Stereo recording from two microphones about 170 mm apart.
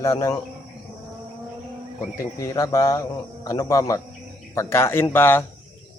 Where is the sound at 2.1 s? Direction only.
20° left (ahead or behind).